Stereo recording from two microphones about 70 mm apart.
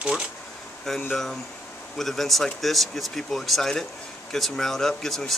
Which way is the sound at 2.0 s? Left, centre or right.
Centre.